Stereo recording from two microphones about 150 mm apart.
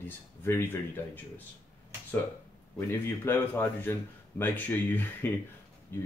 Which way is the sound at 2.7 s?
15° left (ahead or behind).